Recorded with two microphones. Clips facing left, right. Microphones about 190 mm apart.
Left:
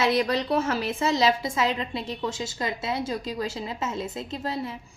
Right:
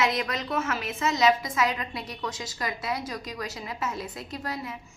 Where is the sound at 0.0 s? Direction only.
30° left (ahead or behind).